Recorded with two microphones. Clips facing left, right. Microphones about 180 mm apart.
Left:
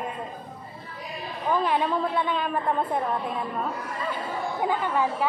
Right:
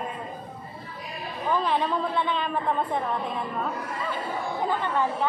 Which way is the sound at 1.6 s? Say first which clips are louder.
Left 2 dB; 10° left (ahead or behind).